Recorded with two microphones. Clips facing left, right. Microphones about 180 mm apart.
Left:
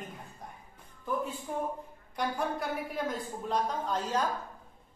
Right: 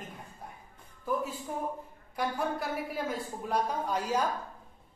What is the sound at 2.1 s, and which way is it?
A woman's voice, 5° right (ahead or behind).